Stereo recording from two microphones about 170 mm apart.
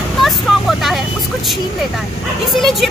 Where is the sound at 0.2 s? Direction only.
Centre (ahead or behind).